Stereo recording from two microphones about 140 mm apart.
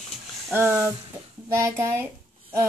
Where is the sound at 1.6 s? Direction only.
20° right (ahead or behind).